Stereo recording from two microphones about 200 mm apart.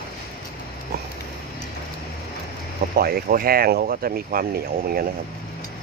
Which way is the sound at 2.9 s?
50° right (ahead or behind).